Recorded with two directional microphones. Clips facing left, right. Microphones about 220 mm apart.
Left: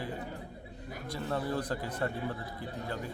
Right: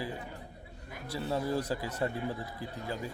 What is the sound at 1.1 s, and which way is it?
Speech, 10° right (ahead or behind).